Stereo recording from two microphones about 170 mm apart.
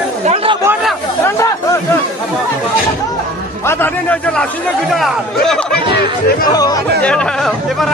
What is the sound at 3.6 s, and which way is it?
Speech, 10° left (ahead or behind).